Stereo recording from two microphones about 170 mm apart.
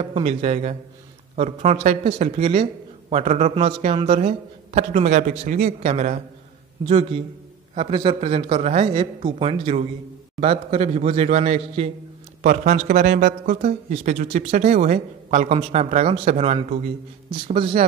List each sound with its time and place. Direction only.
0.0 s a man's voice: 35° right (ahead or behind); by 5.9 s 55° right (ahead or behind)
5.9 s a man's voice: 45° right (ahead or behind)
6.9 s a man's voice: 30° right (ahead or behind)
12.8 s speech: 60° right (ahead or behind)
13.6 s a man's voice: 45° right (ahead or behind)